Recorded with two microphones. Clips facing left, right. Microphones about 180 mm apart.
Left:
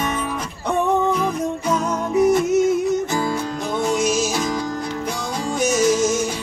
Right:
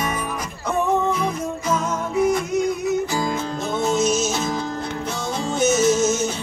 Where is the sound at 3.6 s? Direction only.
25° right (ahead or behind).